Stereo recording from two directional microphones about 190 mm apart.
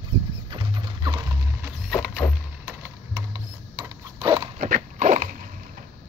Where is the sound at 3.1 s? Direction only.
20° right (ahead or behind).